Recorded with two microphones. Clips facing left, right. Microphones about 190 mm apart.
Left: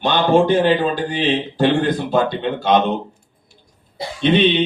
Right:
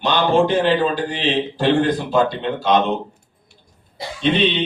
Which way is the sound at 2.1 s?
55° left (ahead or behind).